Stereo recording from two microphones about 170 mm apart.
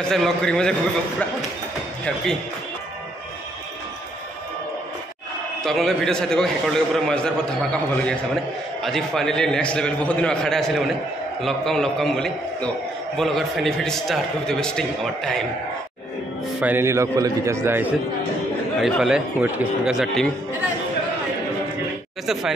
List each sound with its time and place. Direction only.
0.0 s a man's voice: 5° left (ahead or behind)
5.6 s a man's voice: centre (ahead or behind)
16.6 s a man's voice: 15° right (ahead or behind)
18.8 s a man's voice: centre (ahead or behind)
22.2 s a man's voice: centre (ahead or behind)